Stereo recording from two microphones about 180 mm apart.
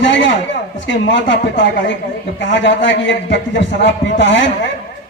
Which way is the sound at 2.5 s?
85° left.